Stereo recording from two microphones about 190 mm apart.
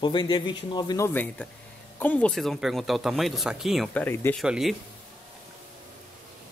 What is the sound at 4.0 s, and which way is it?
Speech, 10° left (ahead or behind).